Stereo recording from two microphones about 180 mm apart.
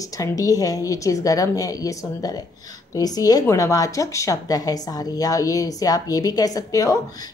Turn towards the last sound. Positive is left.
turn(degrees=20)  # may be behind; listen again after turning